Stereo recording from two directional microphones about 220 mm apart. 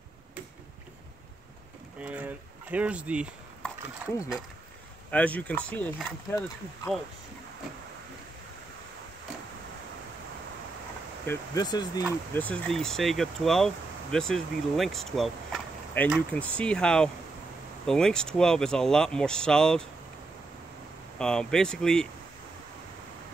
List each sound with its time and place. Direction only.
2.0 s speech: 10° right (ahead or behind)
11.2 s speech: 15° left (ahead or behind)
12.4 s speech: 5° left (ahead or behind)
21.2 s speech: 5° left (ahead or behind)